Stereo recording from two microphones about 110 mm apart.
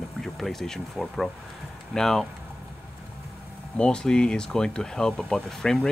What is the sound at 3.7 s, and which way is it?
Speech, 10° left (ahead or behind).